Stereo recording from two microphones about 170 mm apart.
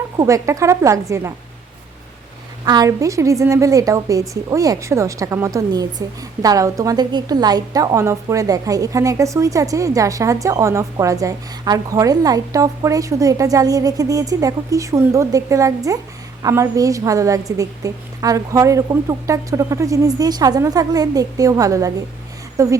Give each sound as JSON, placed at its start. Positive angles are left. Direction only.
{"t": 0.2, "sound": "speech", "side_deg": -20}
{"t": 2.6, "sound": "a woman's voice", "side_deg": -20}